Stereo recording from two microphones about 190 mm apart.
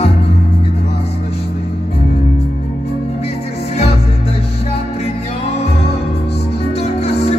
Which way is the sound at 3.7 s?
30° left (ahead or behind).